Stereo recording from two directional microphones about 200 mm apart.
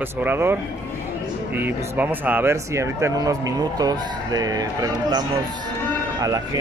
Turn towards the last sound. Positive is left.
turn(degrees=-20)  # may be behind; listen again after turning